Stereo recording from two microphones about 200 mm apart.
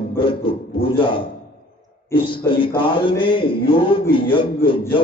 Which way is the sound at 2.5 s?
25° left (ahead or behind).